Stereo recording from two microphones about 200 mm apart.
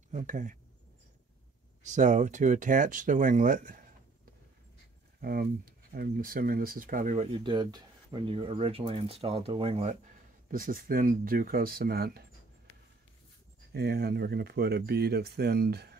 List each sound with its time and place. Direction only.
0.1 s speech: 40° right (ahead or behind)
1.8 s speech: 40° right (ahead or behind)
5.2 s speech: 50° right (ahead or behind)
7.3 s speech: 25° right (ahead or behind)
10.5 s speech: 45° right (ahead or behind)
13.7 s speech: 50° right (ahead or behind)